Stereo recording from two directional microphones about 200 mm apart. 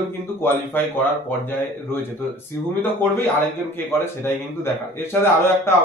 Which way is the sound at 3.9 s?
10° left (ahead or behind).